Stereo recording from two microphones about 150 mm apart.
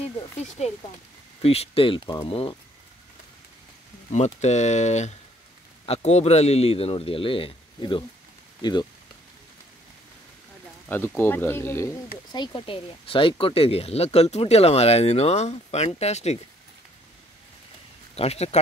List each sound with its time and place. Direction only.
0.0 s speech: 40° left (ahead or behind)
4.1 s speech: 50° left (ahead or behind)
10.9 s speech: 15° left (ahead or behind)
12.3 s speech: 30° left (ahead or behind); by 16.3 s 45° left (ahead or behind)
18.1 s speech: 45° left (ahead or behind)